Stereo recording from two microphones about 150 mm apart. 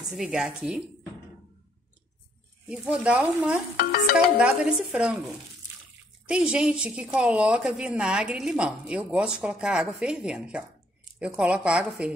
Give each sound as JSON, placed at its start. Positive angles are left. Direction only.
{"t": 0.1, "sound": "a woman's voice", "side_deg": -5}
{"t": 2.7, "sound": "a woman's voice", "side_deg": -10}
{"t": 3.7, "sound": "stir", "side_deg": 75}
{"t": 4.4, "sound": "a woman's voice", "side_deg": -10}
{"t": 6.2, "sound": "a woman's voice", "side_deg": -5}